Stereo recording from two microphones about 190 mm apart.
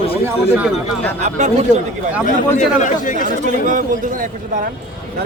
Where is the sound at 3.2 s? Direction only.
45° right (ahead or behind).